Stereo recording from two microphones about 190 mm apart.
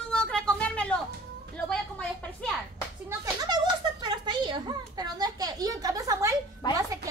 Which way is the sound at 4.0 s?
25° right (ahead or behind).